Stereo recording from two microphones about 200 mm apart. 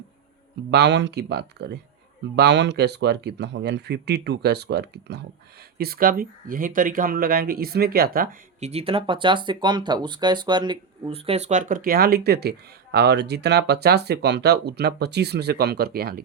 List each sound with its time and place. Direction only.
0.7 s speech: 60° right (ahead or behind); by 8.7 s 45° right (ahead or behind)
8.7 s speech: 25° right (ahead or behind); by 16.2 s 50° right (ahead or behind)